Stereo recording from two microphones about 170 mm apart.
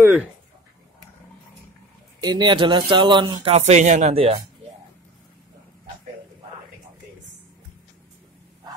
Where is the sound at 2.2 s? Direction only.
25° right (ahead or behind).